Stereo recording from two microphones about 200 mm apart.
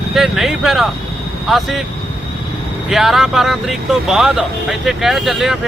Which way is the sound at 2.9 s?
Centre (ahead or behind).